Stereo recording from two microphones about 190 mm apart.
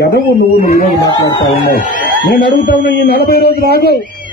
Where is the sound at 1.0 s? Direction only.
20° left (ahead or behind).